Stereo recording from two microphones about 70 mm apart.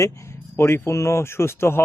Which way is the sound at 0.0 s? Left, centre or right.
Left.